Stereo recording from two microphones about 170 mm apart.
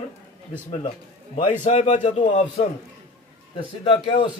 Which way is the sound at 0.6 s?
35° left (ahead or behind).